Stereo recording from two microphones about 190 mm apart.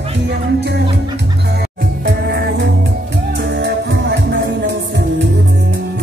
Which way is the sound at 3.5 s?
65° right (ahead or behind).